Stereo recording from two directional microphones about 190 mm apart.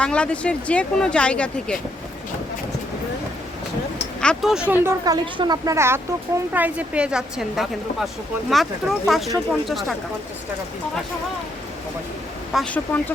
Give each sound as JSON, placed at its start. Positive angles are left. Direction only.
{"t": 0.0, "sound": "speech", "side_deg": 5}
{"t": 4.2, "sound": "speech", "side_deg": 0}
{"t": 4.7, "sound": "speech", "side_deg": -10}
{"t": 12.5, "sound": "speech", "side_deg": 10}